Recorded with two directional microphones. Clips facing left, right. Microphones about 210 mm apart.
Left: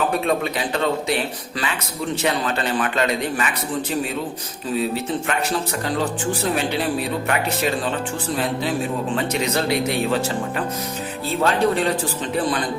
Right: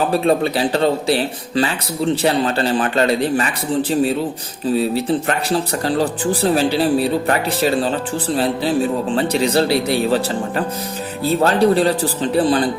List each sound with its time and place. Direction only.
0.1 s speech: 35° right (ahead or behind)
9.1 s speech: 35° right (ahead or behind)
11.3 s speech: 35° right (ahead or behind)